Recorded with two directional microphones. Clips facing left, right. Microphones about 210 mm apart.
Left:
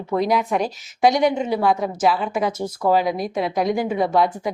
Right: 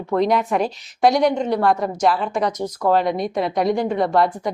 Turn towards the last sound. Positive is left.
turn(degrees=0)  # may be behind; listen again after turning